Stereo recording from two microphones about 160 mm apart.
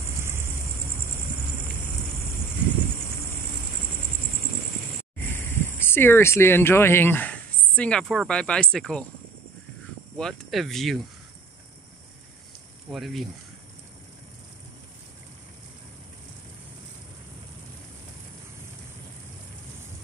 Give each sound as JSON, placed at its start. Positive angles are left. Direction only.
{"t": 0.2, "sound": "vehicle", "side_deg": -15}
{"t": 5.3, "sound": "speech", "side_deg": 15}
{"t": 10.1, "sound": "speech", "side_deg": 0}
{"t": 12.9, "sound": "speech", "side_deg": 0}